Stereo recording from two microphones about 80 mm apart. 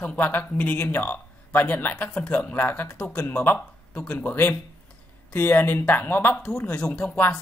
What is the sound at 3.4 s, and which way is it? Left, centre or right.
Speech, left.